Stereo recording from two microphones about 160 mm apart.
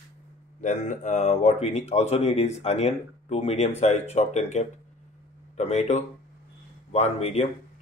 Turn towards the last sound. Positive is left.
turn(degrees=40)  # may be behind; listen again after turning